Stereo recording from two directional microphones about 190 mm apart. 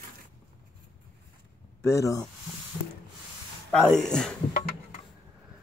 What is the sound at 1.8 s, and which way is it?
Speech, 15° left (ahead or behind).